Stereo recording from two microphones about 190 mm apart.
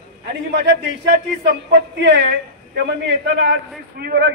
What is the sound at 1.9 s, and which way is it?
A man's voice, 65° right (ahead or behind).